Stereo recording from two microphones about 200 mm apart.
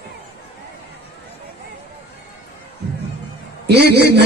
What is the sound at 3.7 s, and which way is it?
Speech, 55° right (ahead or behind).